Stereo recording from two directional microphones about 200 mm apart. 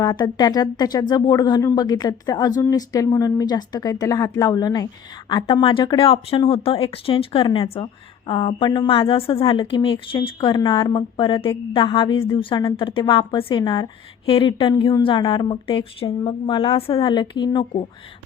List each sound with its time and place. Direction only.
0.0 s a woman's voice: 20° left (ahead or behind)